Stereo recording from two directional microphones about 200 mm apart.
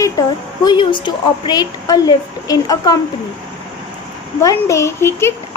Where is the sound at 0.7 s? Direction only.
25° left (ahead or behind).